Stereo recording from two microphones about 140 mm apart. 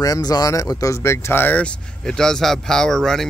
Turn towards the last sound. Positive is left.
turn(degrees=5)  # may be behind; listen again after turning